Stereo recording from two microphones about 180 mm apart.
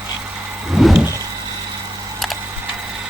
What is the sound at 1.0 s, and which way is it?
Vehicle, 15° right (ahead or behind).